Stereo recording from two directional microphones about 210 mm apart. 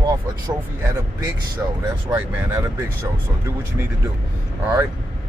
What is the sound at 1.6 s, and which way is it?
Speech, 10° right (ahead or behind).